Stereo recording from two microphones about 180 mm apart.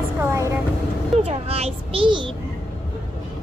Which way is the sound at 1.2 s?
35° right (ahead or behind).